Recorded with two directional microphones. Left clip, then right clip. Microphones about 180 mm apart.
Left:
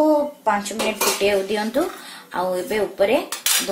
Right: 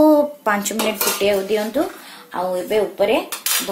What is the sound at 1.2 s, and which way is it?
Dishes, 5° right (ahead or behind).